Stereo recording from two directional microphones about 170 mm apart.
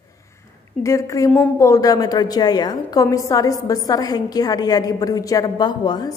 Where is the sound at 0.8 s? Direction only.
20° left (ahead or behind).